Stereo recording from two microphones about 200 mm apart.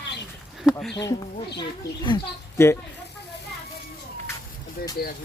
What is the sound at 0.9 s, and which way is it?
Speech, 20° left (ahead or behind).